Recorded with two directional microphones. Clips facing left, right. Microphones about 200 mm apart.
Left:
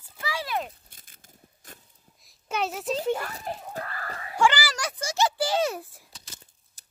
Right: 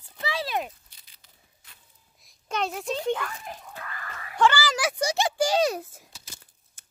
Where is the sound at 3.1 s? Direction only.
40° left (ahead or behind).